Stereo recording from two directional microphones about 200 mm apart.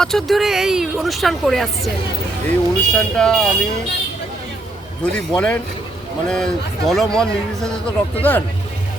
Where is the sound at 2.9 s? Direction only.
5° left (ahead or behind).